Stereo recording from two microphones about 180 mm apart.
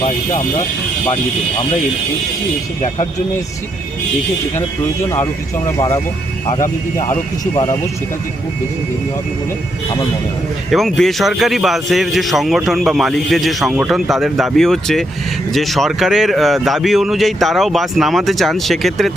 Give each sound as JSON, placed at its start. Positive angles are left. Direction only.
{"t": 5.0, "sound": "speech", "side_deg": 15}
{"t": 10.7, "sound": "a man's voice", "side_deg": 0}